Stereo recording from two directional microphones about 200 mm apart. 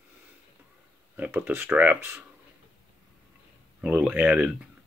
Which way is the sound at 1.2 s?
10° right (ahead or behind).